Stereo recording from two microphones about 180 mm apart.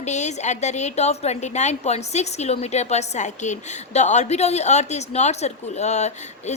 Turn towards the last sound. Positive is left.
turn(degrees=40)  # may be behind; listen again after turning